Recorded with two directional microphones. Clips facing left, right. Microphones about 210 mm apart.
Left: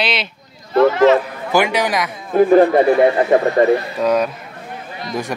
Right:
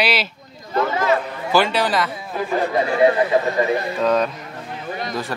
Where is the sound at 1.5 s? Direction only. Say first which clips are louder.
Left 2 dB; 15° left (ahead or behind).